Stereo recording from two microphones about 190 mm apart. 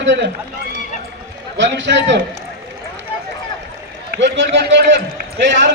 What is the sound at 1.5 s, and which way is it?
Speech, 70° right (ahead or behind).